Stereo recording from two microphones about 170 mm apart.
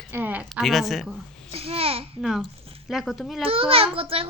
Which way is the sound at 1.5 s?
35° right (ahead or behind).